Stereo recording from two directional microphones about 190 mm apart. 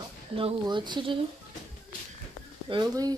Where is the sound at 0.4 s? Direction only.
25° right (ahead or behind).